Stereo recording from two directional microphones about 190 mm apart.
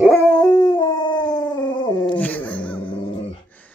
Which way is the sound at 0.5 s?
20° left (ahead or behind).